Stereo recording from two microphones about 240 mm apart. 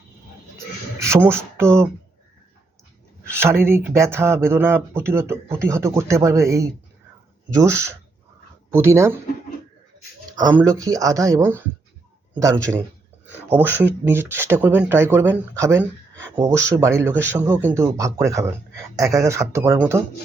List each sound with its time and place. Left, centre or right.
0.9 s speech: centre
3.2 s speech: centre
10.3 s speech: centre